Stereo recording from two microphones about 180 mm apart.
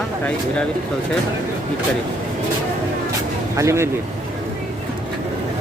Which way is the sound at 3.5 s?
15° right (ahead or behind).